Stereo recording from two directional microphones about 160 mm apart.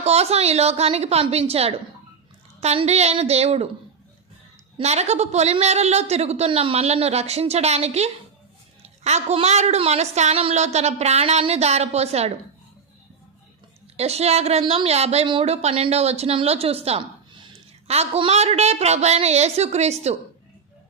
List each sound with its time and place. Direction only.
0.0 s a woman's voice: 40° right (ahead or behind)
4.8 s a woman's voice: 40° right (ahead or behind)
13.9 s a woman's voice: 40° right (ahead or behind)